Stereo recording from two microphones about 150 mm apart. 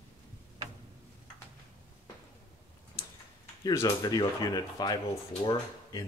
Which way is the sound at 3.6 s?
25° left (ahead or behind).